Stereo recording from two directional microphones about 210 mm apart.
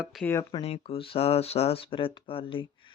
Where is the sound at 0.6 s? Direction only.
25° left (ahead or behind).